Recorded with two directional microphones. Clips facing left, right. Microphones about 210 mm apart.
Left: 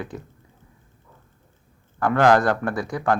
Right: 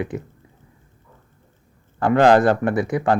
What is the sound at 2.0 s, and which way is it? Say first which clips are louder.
Speech: right 3 dB; 25° right (ahead or behind).